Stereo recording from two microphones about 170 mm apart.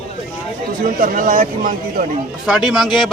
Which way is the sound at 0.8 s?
55° right (ahead or behind).